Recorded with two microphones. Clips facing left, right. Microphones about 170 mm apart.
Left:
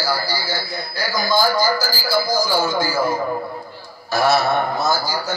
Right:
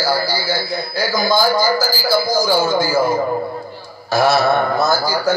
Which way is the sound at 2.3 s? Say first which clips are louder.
Right 4 dB; 50° right (ahead or behind).